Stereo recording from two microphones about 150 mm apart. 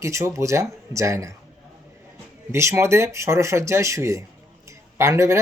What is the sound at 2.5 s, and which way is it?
Speech, 20° right (ahead or behind).